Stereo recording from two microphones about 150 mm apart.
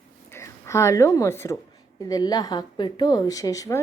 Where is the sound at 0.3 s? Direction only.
20° left (ahead or behind).